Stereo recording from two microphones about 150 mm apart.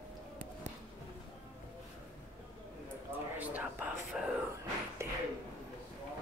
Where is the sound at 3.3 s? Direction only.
10° right (ahead or behind).